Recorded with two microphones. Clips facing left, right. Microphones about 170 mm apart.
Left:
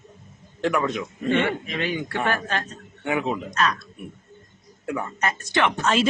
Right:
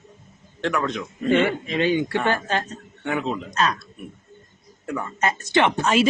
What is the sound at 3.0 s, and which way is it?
Speech, 10° left (ahead or behind).